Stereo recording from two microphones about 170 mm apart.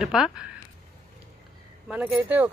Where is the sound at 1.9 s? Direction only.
Centre (ahead or behind).